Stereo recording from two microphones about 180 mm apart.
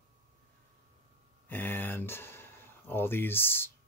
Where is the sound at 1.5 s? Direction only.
10° left (ahead or behind).